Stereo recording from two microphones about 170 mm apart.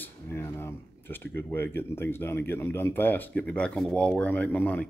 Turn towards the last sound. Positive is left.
turn(degrees=10)  # may be behind; listen again after turning